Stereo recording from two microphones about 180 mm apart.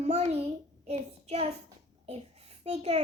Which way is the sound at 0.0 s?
35° right (ahead or behind).